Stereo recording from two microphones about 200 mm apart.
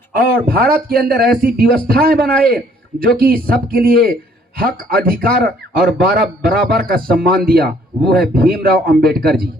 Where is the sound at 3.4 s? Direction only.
50° right (ahead or behind).